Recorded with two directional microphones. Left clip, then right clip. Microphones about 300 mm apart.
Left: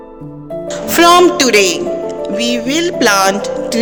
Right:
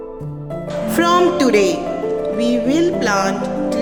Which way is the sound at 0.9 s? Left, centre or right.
Left.